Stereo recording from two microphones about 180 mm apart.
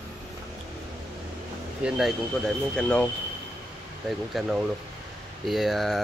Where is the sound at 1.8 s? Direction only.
Centre (ahead or behind).